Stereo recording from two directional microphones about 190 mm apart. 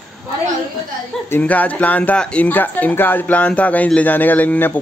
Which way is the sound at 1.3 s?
10° left (ahead or behind).